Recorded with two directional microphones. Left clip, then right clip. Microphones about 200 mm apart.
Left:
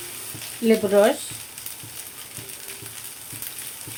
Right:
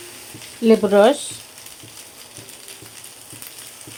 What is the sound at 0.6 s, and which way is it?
Speech, 35° right (ahead or behind).